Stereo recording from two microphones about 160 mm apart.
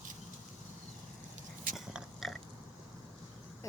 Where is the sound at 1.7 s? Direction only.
Centre (ahead or behind).